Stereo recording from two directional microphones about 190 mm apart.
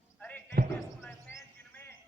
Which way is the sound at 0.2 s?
10° left (ahead or behind).